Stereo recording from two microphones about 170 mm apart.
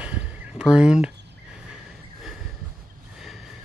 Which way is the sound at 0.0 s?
5° right (ahead or behind).